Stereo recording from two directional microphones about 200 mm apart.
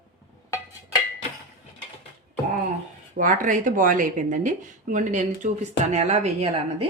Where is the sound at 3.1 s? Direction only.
40° right (ahead or behind).